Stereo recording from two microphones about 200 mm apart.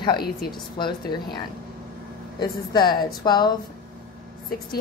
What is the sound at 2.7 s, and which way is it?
Speech, 20° left (ahead or behind).